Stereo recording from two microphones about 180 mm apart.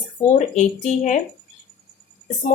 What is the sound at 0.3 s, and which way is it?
Speech, 40° left (ahead or behind).